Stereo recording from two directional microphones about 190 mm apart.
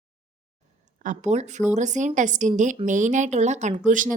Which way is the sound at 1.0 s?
40° right (ahead or behind).